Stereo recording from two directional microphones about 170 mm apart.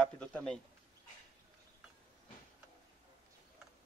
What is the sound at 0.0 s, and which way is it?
Speech, 5° left (ahead or behind).